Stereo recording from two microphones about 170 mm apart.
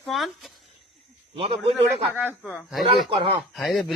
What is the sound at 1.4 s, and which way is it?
Speech, 35° right (ahead or behind).